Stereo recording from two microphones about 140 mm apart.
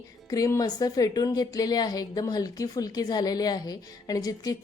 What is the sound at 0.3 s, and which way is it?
A woman's voice, 25° left (ahead or behind).